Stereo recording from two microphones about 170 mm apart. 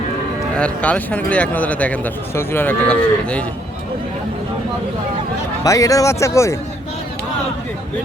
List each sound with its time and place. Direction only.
0.5 s speech: 5° left (ahead or behind)
5.6 s speech: 20° left (ahead or behind)